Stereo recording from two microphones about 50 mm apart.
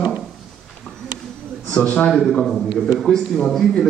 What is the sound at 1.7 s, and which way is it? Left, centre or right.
Speech, left.